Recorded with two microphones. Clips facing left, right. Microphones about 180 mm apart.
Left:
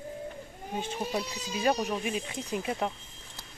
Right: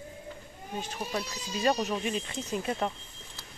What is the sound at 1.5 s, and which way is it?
Speech, 10° left (ahead or behind).